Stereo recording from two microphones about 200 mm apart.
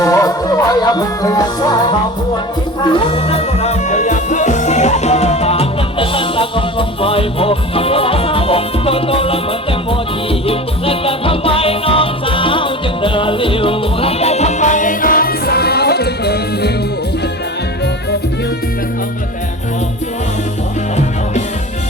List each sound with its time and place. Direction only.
0.0 s music: 15° left (ahead or behind)
10.4 s music: 30° left (ahead or behind); by 16.7 s 55° left (ahead or behind)